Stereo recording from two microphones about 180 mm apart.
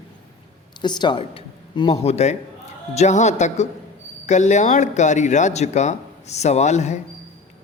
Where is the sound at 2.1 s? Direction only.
40° left (ahead or behind).